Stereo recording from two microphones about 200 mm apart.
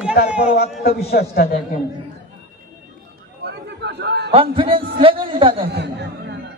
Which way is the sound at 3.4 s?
55° right (ahead or behind).